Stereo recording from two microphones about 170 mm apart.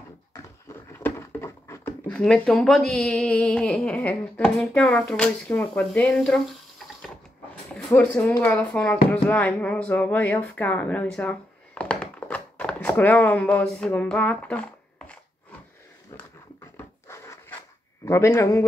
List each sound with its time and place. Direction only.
0.9 s speech: 15° left (ahead or behind)
7.7 s speech: 10° left (ahead or behind)
16.7 s wood: 15° left (ahead or behind)
18.0 s a man's voice: 15° left (ahead or behind)